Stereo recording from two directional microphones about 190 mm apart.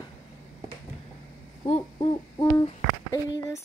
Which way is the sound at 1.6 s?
30° left (ahead or behind).